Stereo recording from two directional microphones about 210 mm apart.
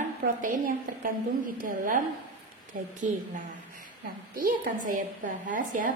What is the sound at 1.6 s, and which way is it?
A woman's voice, 40° right (ahead or behind).